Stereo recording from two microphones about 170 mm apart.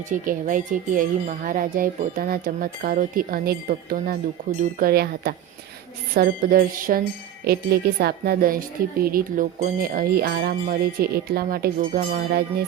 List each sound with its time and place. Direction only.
0.1 s speech: 50° right (ahead or behind)
4.8 s speech: 65° right (ahead or behind)
9.6 s speech: 50° right (ahead or behind); by 12.6 s 65° right (ahead or behind)